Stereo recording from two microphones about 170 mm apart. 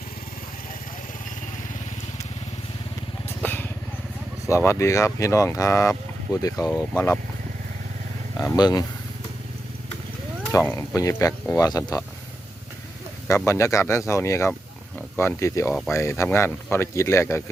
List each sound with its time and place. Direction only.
3.4 s vehicle: 10° left (ahead or behind)
4.4 s speech: 15° left (ahead or behind)
8.4 s speech: 20° left (ahead or behind)
10.5 s speech: 15° left (ahead or behind)
13.2 s speech: 15° left (ahead or behind)